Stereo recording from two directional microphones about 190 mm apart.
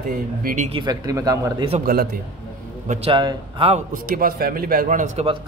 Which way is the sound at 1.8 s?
55° right (ahead or behind).